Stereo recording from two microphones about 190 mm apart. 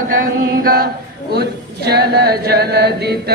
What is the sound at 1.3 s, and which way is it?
Chant, 60° right (ahead or behind).